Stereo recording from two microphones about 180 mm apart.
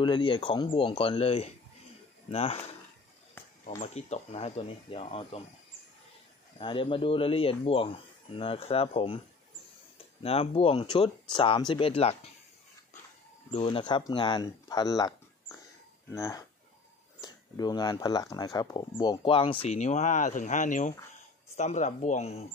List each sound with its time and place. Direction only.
0.0 s speech: 25° left (ahead or behind)
3.8 s speech: 40° left (ahead or behind)
6.6 s speech: 30° left (ahead or behind)
13.5 s speech: 30° left (ahead or behind)